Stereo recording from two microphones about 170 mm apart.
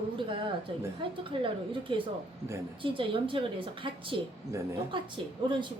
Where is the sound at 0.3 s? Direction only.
30° right (ahead or behind).